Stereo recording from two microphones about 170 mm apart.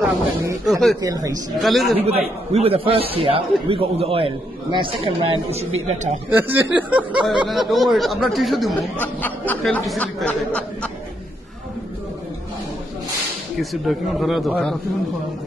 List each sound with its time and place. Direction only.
0.7 s speech: centre (ahead or behind)
1.0 s speech: 20° right (ahead or behind)
1.6 s speech: centre (ahead or behind)
2.0 s a man's voice: 35° right (ahead or behind)
6.3 s speech: 10° right (ahead or behind)
9.0 s speech: 10° left (ahead or behind)
13.6 s speech: centre (ahead or behind)